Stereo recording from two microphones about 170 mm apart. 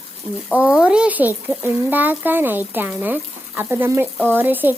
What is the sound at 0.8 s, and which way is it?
Speech, 5° right (ahead or behind).